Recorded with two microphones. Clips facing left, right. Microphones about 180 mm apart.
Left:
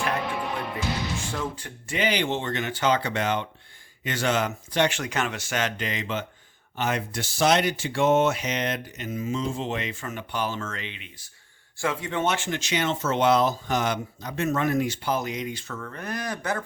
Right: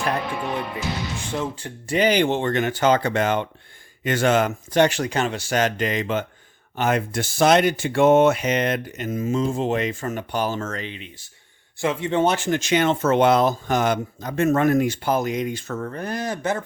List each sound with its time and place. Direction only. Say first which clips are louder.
0.2 s music: right 2 dB; centre (ahead or behind)
1.3 s speech: right 4 dB; 25° right (ahead or behind)
11.8 s speech: right 6 dB; 20° right (ahead or behind)